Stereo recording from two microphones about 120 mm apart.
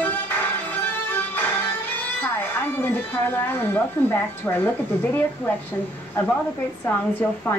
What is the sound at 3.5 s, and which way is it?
Speech, 15° left (ahead or behind).